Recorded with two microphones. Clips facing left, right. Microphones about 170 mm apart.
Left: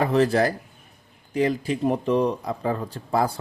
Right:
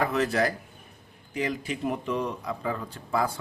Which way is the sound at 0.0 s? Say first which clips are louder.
Left 5 dB; 30° left (ahead or behind).